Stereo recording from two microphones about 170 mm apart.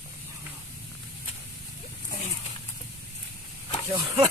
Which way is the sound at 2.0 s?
50° left (ahead or behind).